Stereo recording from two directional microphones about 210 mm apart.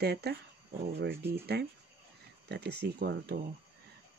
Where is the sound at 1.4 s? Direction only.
50° right (ahead or behind).